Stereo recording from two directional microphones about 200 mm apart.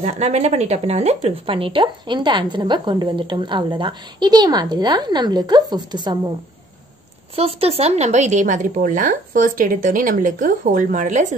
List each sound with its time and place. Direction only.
0.0 s a woman's voice: 35° right (ahead or behind)
7.3 s speech: 30° right (ahead or behind)